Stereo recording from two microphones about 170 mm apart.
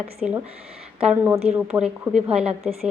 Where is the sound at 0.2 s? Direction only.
5° right (ahead or behind).